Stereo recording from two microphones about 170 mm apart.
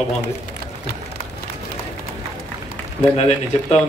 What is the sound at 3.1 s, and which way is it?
Speech, 40° left (ahead or behind).